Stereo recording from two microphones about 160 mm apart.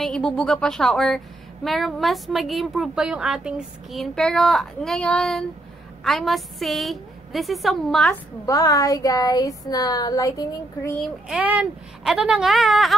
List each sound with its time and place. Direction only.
0.0 s a woman's voice: 5° left (ahead or behind)
8.5 s speech: 20° left (ahead or behind)
11.0 s a woman's voice: 5° right (ahead or behind)